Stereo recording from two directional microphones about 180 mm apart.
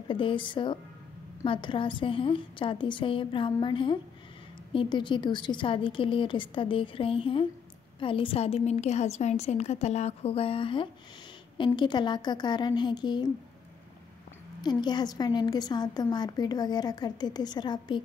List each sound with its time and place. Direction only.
0.1 s a woman's voice: 30° left (ahead or behind)
14.6 s a woman's voice: 25° left (ahead or behind)